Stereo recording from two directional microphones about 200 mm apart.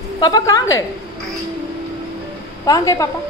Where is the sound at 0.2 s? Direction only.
20° left (ahead or behind).